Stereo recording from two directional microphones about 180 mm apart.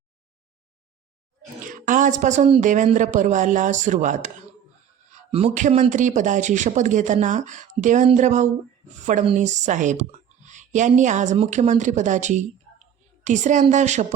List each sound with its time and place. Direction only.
1.6 s speech: 50° right (ahead or behind)
5.3 s speech: 40° right (ahead or behind)